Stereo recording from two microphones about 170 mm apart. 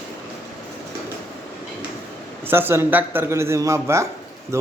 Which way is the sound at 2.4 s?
15° right (ahead or behind).